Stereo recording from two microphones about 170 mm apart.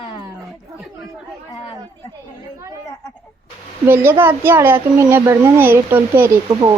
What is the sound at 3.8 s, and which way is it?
A child's voice, 15° right (ahead or behind).